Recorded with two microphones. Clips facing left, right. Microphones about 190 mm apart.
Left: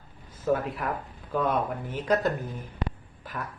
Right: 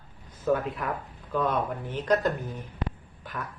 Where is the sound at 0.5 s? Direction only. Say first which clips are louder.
Even; centre (ahead or behind).